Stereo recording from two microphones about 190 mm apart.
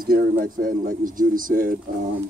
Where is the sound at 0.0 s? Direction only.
50° right (ahead or behind).